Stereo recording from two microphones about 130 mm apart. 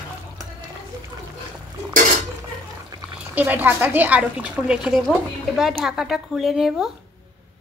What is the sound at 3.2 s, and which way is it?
A woman's voice, 15° right (ahead or behind).